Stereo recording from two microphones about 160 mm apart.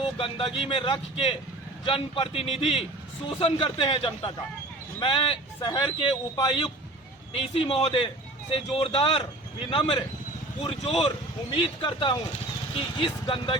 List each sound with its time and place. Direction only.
0.0 s a man's voice: 35° left (ahead or behind)